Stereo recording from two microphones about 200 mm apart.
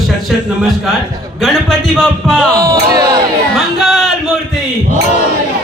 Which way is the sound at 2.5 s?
15° right (ahead or behind).